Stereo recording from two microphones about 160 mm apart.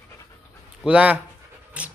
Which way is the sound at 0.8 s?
5° right (ahead or behind).